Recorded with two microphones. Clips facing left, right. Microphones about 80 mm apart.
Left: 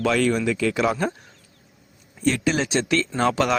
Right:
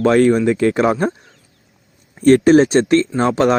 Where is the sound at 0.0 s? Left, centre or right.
Right.